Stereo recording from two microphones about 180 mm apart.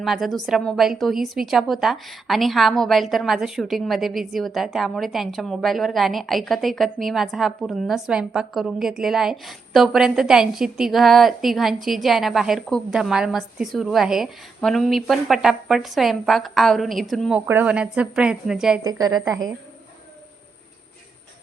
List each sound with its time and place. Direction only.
0.0 s a woman's voice: centre (ahead or behind)
17.4 s a woman's voice: 10° right (ahead or behind)
18.8 s a woman's voice: 20° right (ahead or behind)